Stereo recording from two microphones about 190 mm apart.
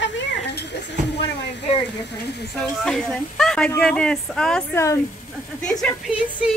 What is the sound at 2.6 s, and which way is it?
Speech, centre (ahead or behind).